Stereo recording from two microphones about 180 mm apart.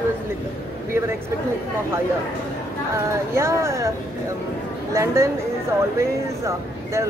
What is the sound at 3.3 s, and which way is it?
Speech, 15° right (ahead or behind).